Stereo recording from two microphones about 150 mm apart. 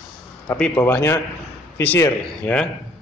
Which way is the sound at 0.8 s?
15° left (ahead or behind).